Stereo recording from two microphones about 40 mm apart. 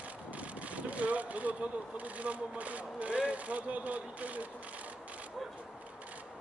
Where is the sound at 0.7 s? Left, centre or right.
Right.